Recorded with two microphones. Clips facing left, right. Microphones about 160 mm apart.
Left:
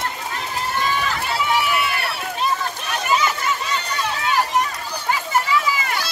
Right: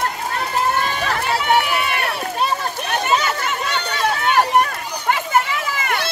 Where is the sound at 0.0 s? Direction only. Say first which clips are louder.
Right 4 dB; 55° right (ahead or behind).